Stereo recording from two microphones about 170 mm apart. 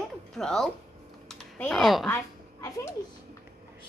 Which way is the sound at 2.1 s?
20° left (ahead or behind).